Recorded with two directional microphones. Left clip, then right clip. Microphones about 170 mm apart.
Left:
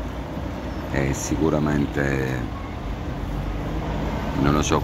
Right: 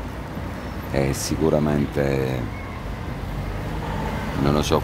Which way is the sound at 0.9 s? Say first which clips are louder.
Right 1 dB; 25° right (ahead or behind).